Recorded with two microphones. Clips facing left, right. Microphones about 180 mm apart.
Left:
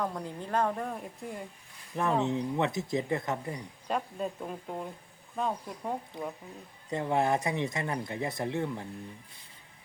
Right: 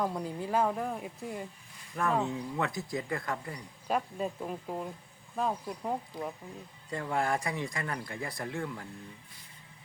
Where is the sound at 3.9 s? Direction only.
5° right (ahead or behind).